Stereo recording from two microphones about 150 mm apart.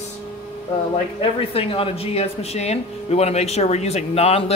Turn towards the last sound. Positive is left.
turn(degrees=45)  # may be behind; listen again after turning